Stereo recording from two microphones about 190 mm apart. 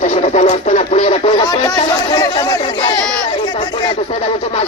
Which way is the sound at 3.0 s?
5° left (ahead or behind).